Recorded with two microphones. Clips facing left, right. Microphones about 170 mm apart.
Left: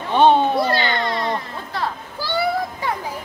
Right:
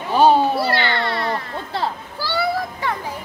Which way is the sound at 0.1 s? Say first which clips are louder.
Even; 5° right (ahead or behind).